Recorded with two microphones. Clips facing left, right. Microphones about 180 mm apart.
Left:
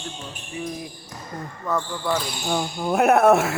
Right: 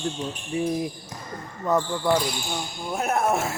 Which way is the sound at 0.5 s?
30° right (ahead or behind).